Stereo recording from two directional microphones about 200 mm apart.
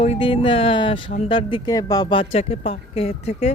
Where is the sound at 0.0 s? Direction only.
30° left (ahead or behind).